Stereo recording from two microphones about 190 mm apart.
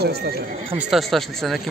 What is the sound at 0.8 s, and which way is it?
Speech, centre (ahead or behind).